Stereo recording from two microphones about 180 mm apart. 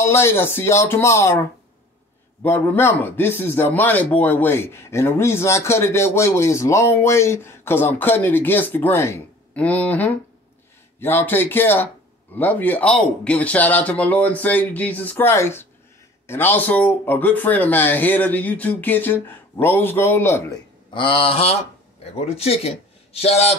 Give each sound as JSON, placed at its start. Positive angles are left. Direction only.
{"t": 0.0, "sound": "a man's voice", "side_deg": 15}
{"t": 2.4, "sound": "a man's voice", "side_deg": 10}
{"t": 20.9, "sound": "a sound", "side_deg": 30}
{"t": 22.3, "sound": "speech", "side_deg": 35}